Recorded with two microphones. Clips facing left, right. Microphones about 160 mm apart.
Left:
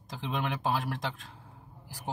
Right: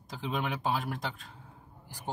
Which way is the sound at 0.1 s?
Centre (ahead or behind).